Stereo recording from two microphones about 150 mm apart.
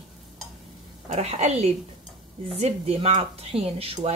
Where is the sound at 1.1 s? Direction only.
45° right (ahead or behind).